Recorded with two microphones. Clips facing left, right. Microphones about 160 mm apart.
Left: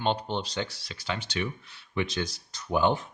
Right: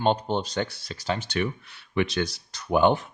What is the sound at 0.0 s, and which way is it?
Speech, 45° right (ahead or behind).